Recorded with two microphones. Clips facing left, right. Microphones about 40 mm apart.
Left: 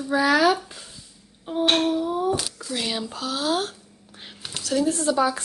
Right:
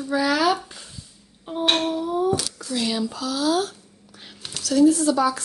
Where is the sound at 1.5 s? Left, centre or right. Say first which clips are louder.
Left 1 dB; centre.